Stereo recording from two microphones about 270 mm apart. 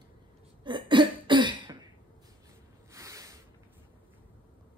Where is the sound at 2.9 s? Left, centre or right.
Centre.